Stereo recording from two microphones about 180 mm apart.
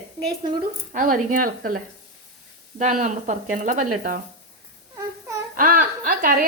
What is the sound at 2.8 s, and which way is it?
A woman's voice, 45° right (ahead or behind).